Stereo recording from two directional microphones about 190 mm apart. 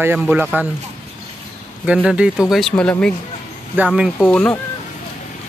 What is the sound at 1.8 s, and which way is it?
Speech, 5° right (ahead or behind).